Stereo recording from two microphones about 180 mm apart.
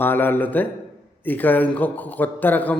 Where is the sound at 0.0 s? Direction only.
10° left (ahead or behind).